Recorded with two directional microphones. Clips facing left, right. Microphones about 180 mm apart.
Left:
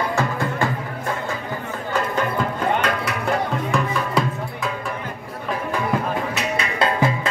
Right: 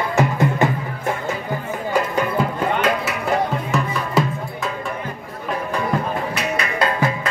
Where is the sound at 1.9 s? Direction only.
10° right (ahead or behind).